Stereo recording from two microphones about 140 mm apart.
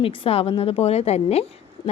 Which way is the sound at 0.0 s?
40° left (ahead or behind).